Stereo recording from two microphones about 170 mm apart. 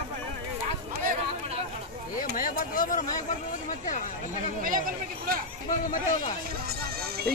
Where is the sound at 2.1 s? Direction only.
55° left (ahead or behind).